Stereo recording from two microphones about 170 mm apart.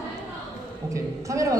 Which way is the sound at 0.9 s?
20° right (ahead or behind).